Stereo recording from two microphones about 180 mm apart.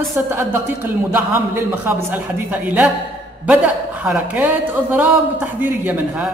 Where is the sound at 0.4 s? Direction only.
10° right (ahead or behind).